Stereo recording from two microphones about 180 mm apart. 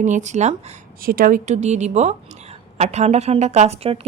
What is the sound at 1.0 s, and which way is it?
A woman's voice, 55° right (ahead or behind).